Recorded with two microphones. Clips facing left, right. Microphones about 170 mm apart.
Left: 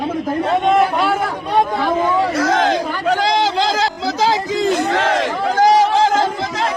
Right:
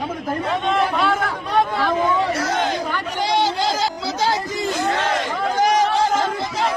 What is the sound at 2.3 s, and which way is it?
Chatter, 90° left.